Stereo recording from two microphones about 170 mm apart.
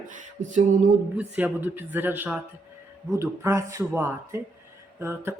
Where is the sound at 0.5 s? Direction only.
45° right (ahead or behind).